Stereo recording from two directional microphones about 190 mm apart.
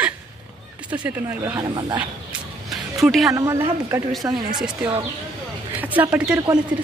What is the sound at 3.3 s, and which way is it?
Speech, 20° right (ahead or behind).